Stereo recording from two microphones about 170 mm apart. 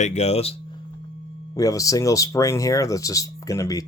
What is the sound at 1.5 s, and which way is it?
Speech, 20° left (ahead or behind).